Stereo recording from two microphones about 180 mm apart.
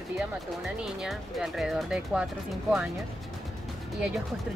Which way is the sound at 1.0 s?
Centre (ahead or behind).